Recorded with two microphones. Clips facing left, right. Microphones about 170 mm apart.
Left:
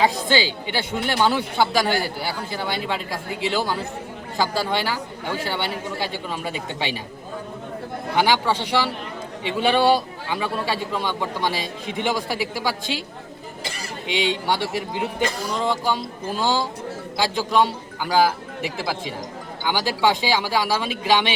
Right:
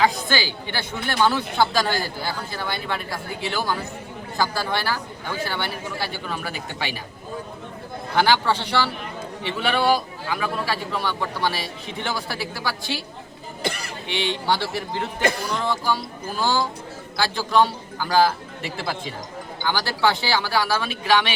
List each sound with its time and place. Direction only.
0.0 s a woman's voice: 20° left (ahead or behind)
8.1 s a woman's voice: 15° left (ahead or behind)
13.6 s cough: 60° right (ahead or behind)
14.1 s a woman's voice: 15° left (ahead or behind)
18.0 s a woman's voice: 15° left (ahead or behind)